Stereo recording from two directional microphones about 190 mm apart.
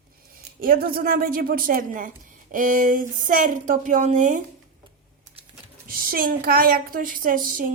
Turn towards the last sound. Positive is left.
turn(degrees=-45)  # may be behind; listen again after turning